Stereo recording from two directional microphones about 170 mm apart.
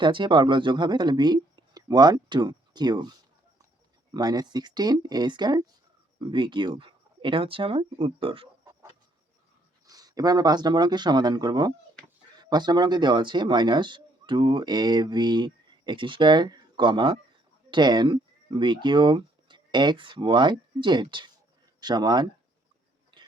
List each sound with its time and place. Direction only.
0.0 s speech: 30° right (ahead or behind)
4.1 s speech: 25° right (ahead or behind)
9.8 s speech: 20° right (ahead or behind)